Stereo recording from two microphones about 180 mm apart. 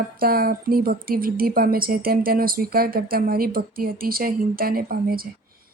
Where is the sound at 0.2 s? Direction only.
55° right (ahead or behind).